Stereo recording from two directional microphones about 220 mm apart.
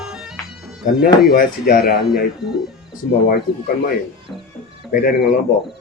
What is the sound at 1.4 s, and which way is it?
Speech, 45° left (ahead or behind).